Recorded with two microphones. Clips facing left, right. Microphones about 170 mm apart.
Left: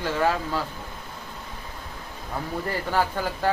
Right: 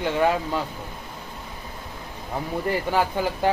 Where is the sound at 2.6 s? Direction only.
15° right (ahead or behind).